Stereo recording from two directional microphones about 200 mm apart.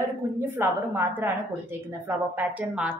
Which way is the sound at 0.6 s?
10° right (ahead or behind).